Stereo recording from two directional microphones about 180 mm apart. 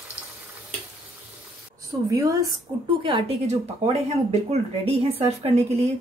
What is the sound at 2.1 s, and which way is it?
A woman's voice, 20° right (ahead or behind).